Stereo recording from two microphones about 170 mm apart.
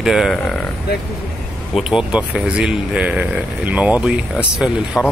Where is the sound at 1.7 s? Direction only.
5° right (ahead or behind).